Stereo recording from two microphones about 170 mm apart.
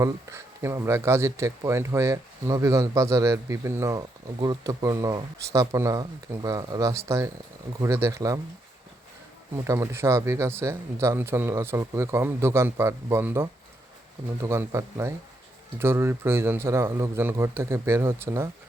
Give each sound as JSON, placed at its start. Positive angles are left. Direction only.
{"t": 0.0, "sound": "speech", "side_deg": -15}
{"t": 9.6, "sound": "speech", "side_deg": -15}